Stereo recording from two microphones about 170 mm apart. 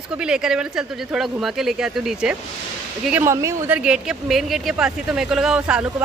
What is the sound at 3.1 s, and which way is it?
A woman's voice, 15° right (ahead or behind).